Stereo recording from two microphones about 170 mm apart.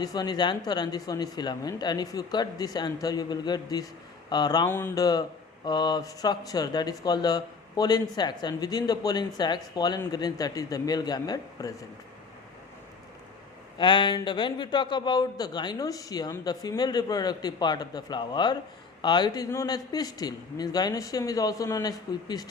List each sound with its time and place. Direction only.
0.0 s speech: 25° left (ahead or behind)
13.7 s speech: 25° left (ahead or behind)